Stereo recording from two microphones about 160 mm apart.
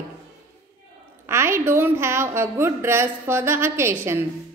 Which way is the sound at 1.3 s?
15° right (ahead or behind).